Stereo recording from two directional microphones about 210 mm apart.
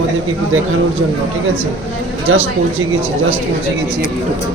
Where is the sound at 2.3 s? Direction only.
75° right (ahead or behind).